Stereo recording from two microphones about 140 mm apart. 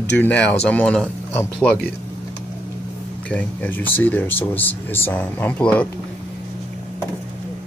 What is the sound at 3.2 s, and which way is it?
Speech, 10° left (ahead or behind).